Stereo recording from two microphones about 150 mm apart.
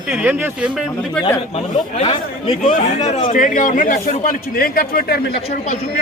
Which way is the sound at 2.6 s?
55° left (ahead or behind).